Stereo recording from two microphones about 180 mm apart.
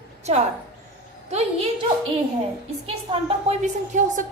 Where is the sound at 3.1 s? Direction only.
40° right (ahead or behind).